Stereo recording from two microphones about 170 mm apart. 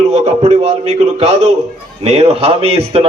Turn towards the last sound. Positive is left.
turn(degrees=-35)  # may be behind; listen again after turning